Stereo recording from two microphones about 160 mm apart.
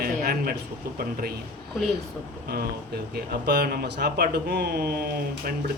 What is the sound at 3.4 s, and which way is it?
Speech, 85° right.